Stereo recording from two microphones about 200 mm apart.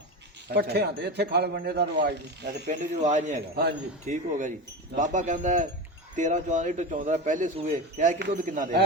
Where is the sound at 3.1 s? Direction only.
40° right (ahead or behind).